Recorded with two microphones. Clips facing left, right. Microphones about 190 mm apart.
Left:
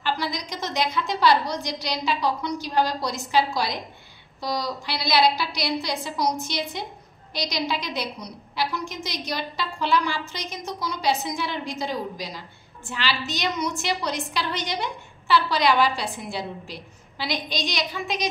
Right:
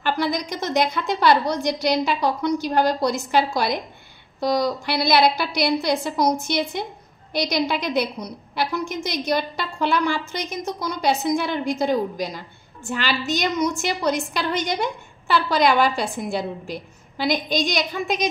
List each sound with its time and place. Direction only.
0.0 s a woman's voice: 55° right (ahead or behind)